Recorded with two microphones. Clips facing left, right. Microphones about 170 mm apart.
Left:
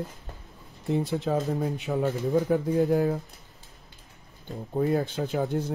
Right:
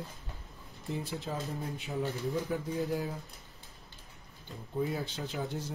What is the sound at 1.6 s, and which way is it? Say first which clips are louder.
Speech: left 8 dB; 75° left (ahead or behind).